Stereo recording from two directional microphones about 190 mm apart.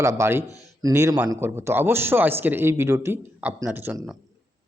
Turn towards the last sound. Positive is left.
turn(degrees=-15)  # may be behind; listen again after turning